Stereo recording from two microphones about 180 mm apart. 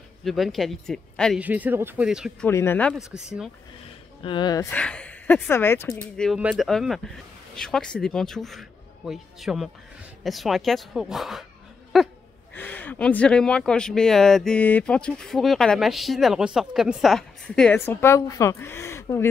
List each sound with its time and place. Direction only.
0.2 s speech: centre (ahead or behind)
1.4 s speech: 10° right (ahead or behind)
2.4 s speech: 10° left (ahead or behind)
2.9 s speech: 5° right (ahead or behind)
4.2 s speech: 25° left (ahead or behind)
4.6 s speech: 5° left (ahead or behind)
6.1 s speech: centre (ahead or behind)
11.9 s laughter: centre (ahead or behind)
12.5 s speech: 10° left (ahead or behind)